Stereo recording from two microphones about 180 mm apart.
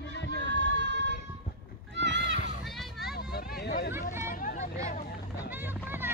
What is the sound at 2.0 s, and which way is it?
Horse, 75° right (ahead or behind).